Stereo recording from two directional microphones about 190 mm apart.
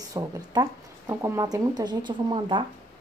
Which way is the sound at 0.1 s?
20° right (ahead or behind).